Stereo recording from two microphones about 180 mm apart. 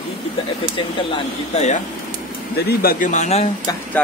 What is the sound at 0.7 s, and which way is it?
Speech, 35° left (ahead or behind).